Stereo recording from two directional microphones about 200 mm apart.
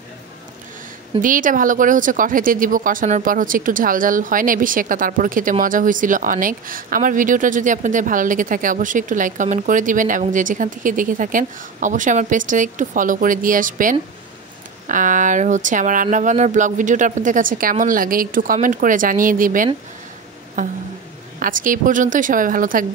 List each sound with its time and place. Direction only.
1.2 s a woman's voice: 40° right (ahead or behind)